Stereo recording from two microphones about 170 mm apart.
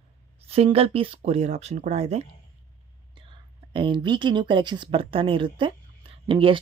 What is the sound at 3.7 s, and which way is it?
Speech, 30° right (ahead or behind).